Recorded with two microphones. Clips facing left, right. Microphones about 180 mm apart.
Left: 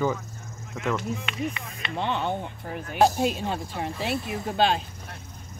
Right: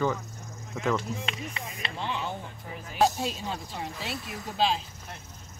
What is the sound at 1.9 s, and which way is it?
Speech, 60° left (ahead or behind).